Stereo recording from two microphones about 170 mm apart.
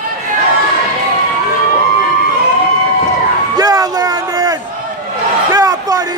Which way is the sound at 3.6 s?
20° right (ahead or behind).